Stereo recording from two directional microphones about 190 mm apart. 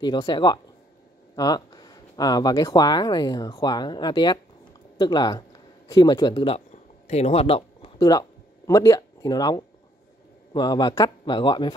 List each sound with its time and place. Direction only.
0.0 s speech: 20° left (ahead or behind)